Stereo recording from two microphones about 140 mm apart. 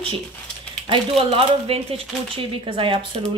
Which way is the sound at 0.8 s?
40° right (ahead or behind).